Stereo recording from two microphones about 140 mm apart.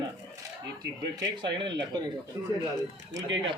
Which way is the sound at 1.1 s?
30° right (ahead or behind).